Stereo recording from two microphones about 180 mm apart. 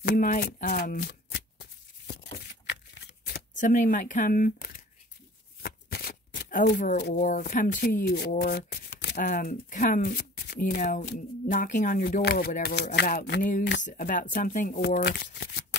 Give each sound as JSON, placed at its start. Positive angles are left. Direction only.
{"t": 0.0, "sound": "shuffling cards", "side_deg": 50}
{"t": 3.5, "sound": "speech", "side_deg": 45}
{"t": 5.6, "sound": "shuffling cards", "side_deg": 60}
{"t": 7.2, "sound": "speech", "side_deg": 50}
{"t": 13.8, "sound": "speech", "side_deg": 50}
{"t": 14.8, "sound": "speech", "side_deg": 65}